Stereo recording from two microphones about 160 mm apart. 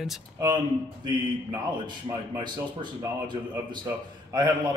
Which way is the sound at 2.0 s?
25° right (ahead or behind).